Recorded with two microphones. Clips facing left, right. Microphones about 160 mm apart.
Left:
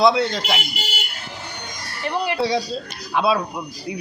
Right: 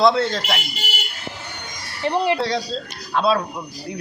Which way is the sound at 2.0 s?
25° right (ahead or behind).